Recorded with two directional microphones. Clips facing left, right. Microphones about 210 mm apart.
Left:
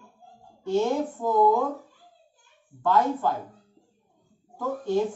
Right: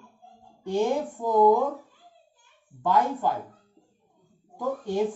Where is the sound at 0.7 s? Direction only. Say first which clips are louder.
Left 1 dB; 15° right (ahead or behind).